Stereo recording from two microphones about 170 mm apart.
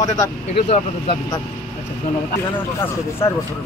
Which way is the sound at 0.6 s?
40° left (ahead or behind).